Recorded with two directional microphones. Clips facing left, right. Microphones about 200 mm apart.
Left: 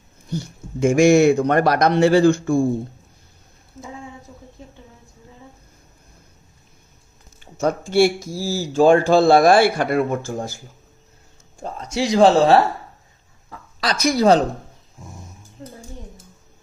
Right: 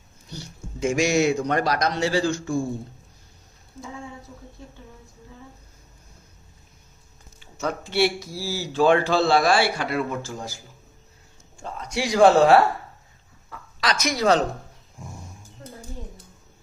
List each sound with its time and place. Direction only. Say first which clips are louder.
0.3 s a man's voice: left 10 dB; 50° left (ahead or behind)
7.3 s speech: left 7 dB; 50° left (ahead or behind)
11.6 s speech: left 5 dB; 30° left (ahead or behind)
13.8 s speech: left 5 dB; 35° left (ahead or behind)
15.0 s speech: even; centre (ahead or behind)